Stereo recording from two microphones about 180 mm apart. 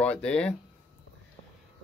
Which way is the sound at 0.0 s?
5° left (ahead or behind).